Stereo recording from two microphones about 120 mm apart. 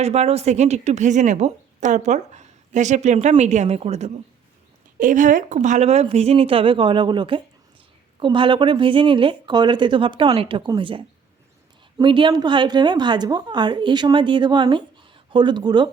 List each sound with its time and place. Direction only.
0.0 s a woman's voice: 60° right (ahead or behind)
3.8 s speech: 60° right (ahead or behind)
4.9 s speech: 90° right; by 11.0 s 45° right (ahead or behind)
12.0 s a woman's voice: 45° right (ahead or behind)